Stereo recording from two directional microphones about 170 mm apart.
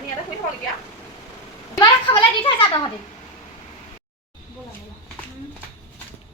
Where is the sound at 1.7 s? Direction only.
30° left (ahead or behind).